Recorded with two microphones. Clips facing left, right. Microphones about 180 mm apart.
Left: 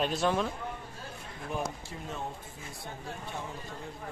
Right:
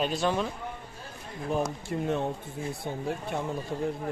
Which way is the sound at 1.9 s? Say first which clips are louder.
Right 10 dB; 65° right (ahead or behind).